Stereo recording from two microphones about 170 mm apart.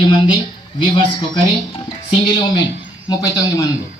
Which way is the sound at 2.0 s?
25° left (ahead or behind).